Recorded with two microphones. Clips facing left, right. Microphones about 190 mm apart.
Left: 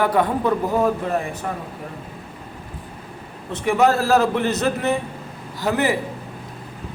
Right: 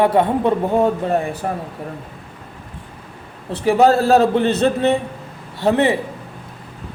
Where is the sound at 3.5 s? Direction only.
35° right (ahead or behind).